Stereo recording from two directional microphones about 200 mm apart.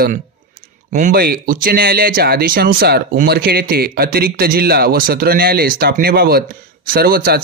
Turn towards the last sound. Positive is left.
turn(degrees=-50)  # may be behind; listen again after turning